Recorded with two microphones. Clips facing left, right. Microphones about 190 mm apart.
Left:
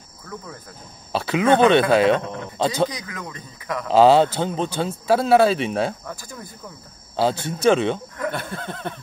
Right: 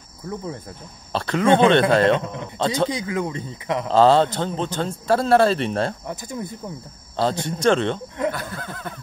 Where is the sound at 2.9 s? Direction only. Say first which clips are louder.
Right 9 dB; 30° right (ahead or behind).